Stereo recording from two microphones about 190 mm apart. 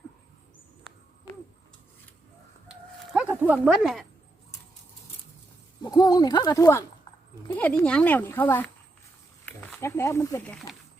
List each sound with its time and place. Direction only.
2.6 s chicken: 5° right (ahead or behind)
5.8 s speech: 20° left (ahead or behind)